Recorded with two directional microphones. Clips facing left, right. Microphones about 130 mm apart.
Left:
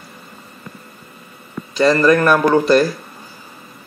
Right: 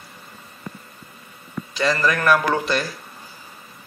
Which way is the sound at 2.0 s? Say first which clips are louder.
Left 4 dB; 30° left (ahead or behind).